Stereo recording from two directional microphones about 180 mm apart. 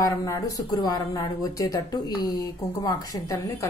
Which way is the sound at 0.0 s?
20° left (ahead or behind).